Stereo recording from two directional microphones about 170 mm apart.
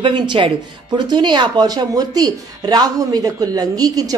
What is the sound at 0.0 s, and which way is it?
A woman's voice, 30° right (ahead or behind).